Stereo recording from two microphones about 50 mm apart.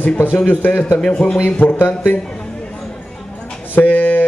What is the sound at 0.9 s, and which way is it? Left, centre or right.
Speech, left.